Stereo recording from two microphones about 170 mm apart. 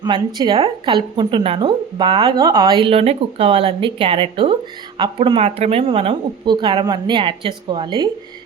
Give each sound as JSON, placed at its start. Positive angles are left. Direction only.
{"t": 0.3, "sound": "a woman's voice", "side_deg": -25}